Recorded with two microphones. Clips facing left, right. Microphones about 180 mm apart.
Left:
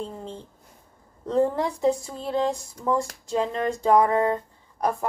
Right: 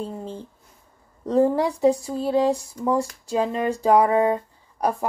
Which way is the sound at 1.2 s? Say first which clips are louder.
Right 3 dB; 15° right (ahead or behind).